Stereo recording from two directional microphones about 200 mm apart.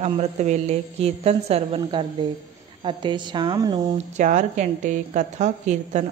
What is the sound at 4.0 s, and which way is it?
A woman's voice, 40° right (ahead or behind).